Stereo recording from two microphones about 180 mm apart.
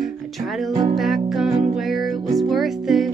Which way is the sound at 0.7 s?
25° right (ahead or behind).